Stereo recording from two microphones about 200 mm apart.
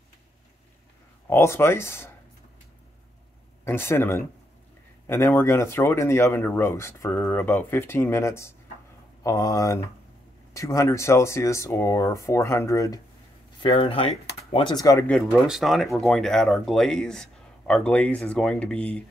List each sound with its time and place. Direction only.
1.3 s speech: 15° left (ahead or behind)
3.6 s speech: 10° left (ahead or behind)
13.6 s speech: 30° left (ahead or behind)
15.0 s speech: centre (ahead or behind)